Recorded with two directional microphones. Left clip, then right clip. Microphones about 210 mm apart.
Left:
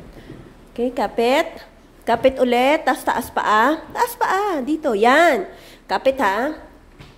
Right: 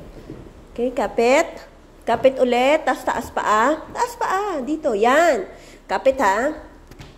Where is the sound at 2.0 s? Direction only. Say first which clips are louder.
Even; 15° left (ahead or behind).